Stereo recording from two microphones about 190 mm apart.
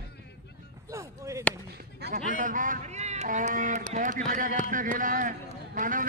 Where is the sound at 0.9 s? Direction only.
15° right (ahead or behind).